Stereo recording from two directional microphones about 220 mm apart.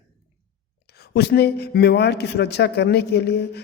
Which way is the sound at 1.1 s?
45° left (ahead or behind).